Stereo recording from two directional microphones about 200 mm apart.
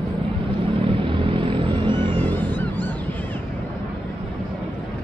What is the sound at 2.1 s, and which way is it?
Honk, 10° left (ahead or behind).